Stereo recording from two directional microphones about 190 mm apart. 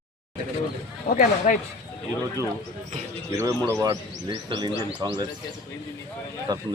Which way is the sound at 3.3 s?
15° right (ahead or behind).